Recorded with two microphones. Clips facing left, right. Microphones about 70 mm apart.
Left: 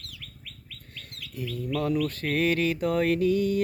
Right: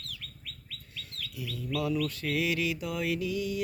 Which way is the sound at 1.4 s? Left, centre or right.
Left.